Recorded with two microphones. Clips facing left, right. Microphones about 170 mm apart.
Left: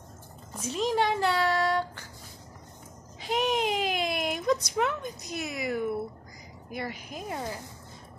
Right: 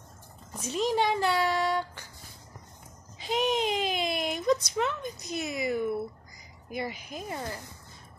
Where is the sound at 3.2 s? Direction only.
5° left (ahead or behind).